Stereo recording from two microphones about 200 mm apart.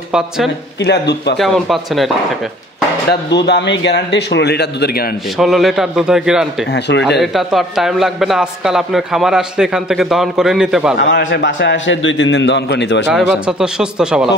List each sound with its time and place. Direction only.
0.7 s a man's voice: 55° left (ahead or behind)
1.4 s a man's voice: centre (ahead or behind)
3.1 s a man's voice: 60° left (ahead or behind)
5.4 s a man's voice: centre (ahead or behind)
6.7 s a man's voice: 60° left (ahead or behind)
7.2 s a man's voice: centre (ahead or behind)
11.0 s a man's voice: 60° left (ahead or behind)
13.5 s a man's voice: 5° right (ahead or behind)